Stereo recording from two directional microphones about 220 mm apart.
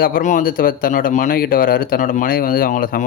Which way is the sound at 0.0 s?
35° left (ahead or behind).